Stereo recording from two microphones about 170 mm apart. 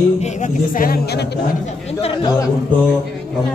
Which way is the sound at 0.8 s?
60° left (ahead or behind).